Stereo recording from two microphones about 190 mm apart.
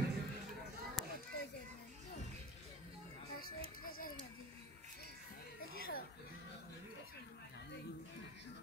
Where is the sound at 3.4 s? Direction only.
50° left (ahead or behind).